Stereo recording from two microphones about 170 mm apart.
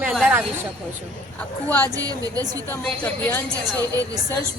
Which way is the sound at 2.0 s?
20° right (ahead or behind).